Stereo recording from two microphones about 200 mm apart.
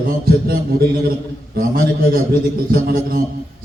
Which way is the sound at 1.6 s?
45° right (ahead or behind).